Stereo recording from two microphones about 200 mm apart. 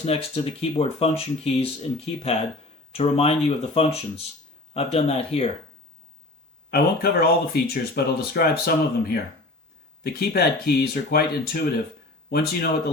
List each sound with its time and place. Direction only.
0.0 s speech: 30° left (ahead or behind)
6.7 s speech: 50° left (ahead or behind)